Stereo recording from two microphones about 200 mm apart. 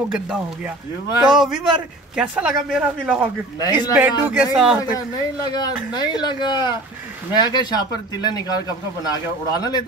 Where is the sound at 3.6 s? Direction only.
20° left (ahead or behind).